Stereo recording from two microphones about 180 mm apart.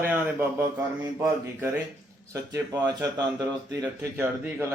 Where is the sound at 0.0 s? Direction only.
10° right (ahead or behind).